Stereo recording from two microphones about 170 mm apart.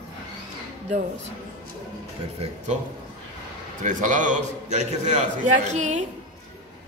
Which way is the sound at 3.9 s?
50° right (ahead or behind).